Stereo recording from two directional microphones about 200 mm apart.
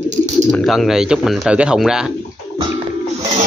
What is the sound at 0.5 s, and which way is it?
Speech, centre (ahead or behind).